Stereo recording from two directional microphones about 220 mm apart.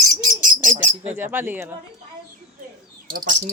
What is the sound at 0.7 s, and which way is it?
Speech, 10° right (ahead or behind).